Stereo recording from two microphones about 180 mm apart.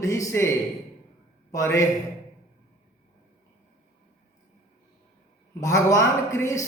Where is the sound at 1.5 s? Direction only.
15° left (ahead or behind).